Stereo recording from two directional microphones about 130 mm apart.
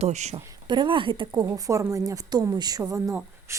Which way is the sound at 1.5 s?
25° right (ahead or behind).